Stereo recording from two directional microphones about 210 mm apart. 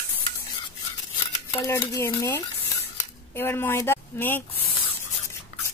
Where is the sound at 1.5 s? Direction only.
15° left (ahead or behind).